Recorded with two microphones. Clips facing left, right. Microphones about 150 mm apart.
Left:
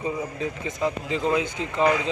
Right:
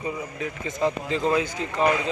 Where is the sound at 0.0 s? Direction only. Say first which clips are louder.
Left 2 dB; 20° left (ahead or behind).